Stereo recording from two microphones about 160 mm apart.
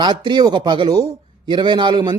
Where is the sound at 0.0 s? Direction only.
25° right (ahead or behind).